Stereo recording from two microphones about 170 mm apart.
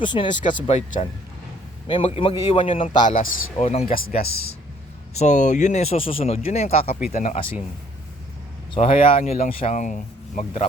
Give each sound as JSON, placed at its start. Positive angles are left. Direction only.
{"t": 0.0, "sound": "speech", "side_deg": 25}
{"t": 0.5, "sound": "speech", "side_deg": 40}
{"t": 3.1, "sound": "speech", "side_deg": 45}
{"t": 5.1, "sound": "speech", "side_deg": 45}
{"t": 8.7, "sound": "speech", "side_deg": 35}